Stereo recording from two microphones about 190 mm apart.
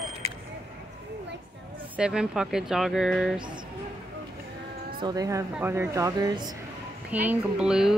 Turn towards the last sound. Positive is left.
turn(degrees=-5)  # may be behind; listen again after turning